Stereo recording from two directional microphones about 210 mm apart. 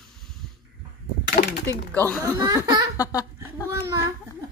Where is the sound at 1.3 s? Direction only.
50° left (ahead or behind).